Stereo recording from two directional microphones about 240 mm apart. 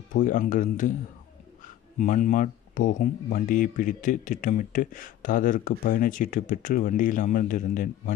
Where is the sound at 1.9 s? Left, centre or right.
Left.